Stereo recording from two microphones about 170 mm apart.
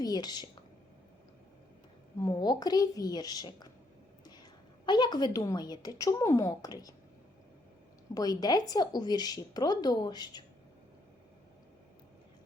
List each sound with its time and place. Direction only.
0.0 s a woman's voice: 25° left (ahead or behind)
2.2 s a woman's voice: 25° left (ahead or behind)
4.9 s a woman's voice: 25° left (ahead or behind)
8.1 s a woman's voice: 20° left (ahead or behind)